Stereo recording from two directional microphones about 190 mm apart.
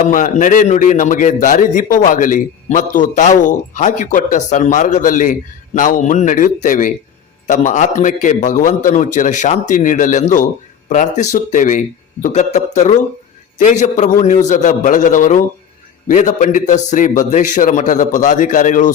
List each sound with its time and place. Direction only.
0.0 s a man's voice: 45° left (ahead or behind)